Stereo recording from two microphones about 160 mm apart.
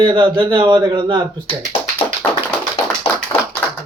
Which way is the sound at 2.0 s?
35° left (ahead or behind).